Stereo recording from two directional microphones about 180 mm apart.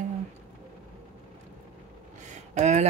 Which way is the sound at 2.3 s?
40° right (ahead or behind).